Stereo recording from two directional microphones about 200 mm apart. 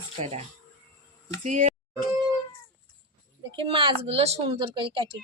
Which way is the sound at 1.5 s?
35° right (ahead or behind).